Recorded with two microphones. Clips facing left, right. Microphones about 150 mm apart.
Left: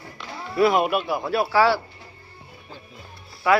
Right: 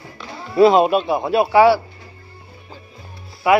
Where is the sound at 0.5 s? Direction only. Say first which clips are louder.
Right 7 dB; 25° right (ahead or behind).